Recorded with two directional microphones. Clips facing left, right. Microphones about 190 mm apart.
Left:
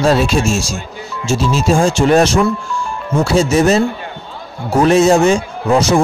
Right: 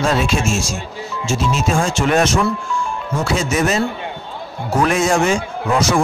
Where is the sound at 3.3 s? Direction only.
30° left (ahead or behind).